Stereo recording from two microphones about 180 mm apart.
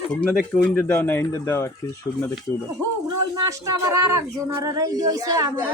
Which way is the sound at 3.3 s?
20° right (ahead or behind).